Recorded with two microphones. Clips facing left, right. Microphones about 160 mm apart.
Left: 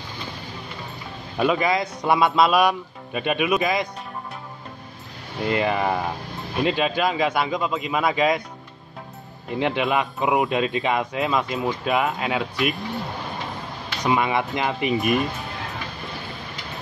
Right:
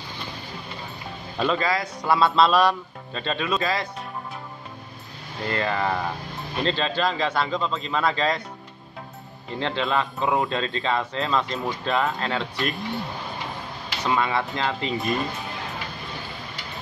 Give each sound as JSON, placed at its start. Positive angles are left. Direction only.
{"t": 1.4, "sound": "speech", "side_deg": 15}
{"t": 5.4, "sound": "speech", "side_deg": 15}
{"t": 9.5, "sound": "speech", "side_deg": 15}
{"t": 14.0, "sound": "speech", "side_deg": 15}